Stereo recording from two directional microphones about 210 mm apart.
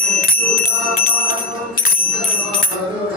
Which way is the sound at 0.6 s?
45° left (ahead or behind).